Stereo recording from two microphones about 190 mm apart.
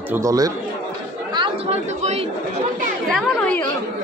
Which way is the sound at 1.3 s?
30° right (ahead or behind).